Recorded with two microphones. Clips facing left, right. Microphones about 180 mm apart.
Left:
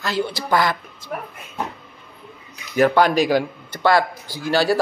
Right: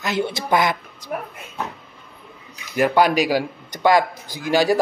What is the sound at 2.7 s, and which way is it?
Speech, 10° right (ahead or behind).